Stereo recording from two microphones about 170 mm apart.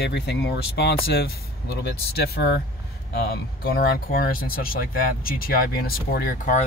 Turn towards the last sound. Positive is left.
turn(degrees=45)  # may be behind; listen again after turning